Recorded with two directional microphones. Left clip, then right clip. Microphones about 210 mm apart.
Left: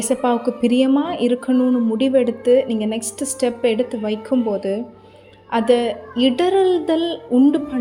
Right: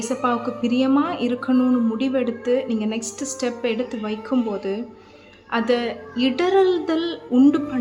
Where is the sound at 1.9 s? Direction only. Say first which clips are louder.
Left 6 dB; 15° left (ahead or behind).